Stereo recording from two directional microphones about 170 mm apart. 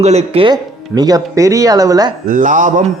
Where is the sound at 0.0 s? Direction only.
40° right (ahead or behind); by 2.1 s 20° right (ahead or behind).